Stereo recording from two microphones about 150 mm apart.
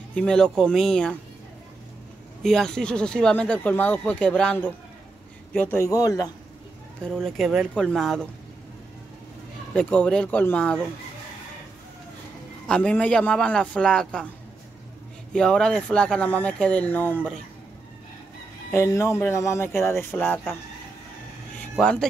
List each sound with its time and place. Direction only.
0.1 s speech: 5° left (ahead or behind)
2.4 s a man's voice: 5° left (ahead or behind); by 6.3 s 25° left (ahead or behind)
7.0 s speech: 5° left (ahead or behind)
9.8 s speech: 10° left (ahead or behind)
12.6 s speech: 5° left (ahead or behind)
15.3 s speech: 5° left (ahead or behind)
18.7 s speech: 15° left (ahead or behind)
21.7 s speech: 5° left (ahead or behind)